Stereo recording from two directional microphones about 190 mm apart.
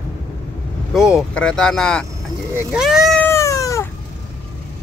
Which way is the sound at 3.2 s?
15° left (ahead or behind).